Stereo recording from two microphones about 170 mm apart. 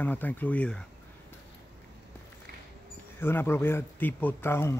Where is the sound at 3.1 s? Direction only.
15° left (ahead or behind).